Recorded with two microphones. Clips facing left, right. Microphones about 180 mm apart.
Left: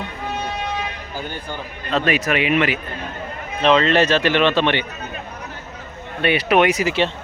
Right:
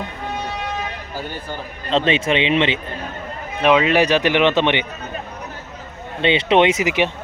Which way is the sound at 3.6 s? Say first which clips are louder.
Even; 10° right (ahead or behind).